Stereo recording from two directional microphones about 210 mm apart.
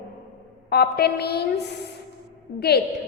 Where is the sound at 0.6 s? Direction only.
50° left (ahead or behind).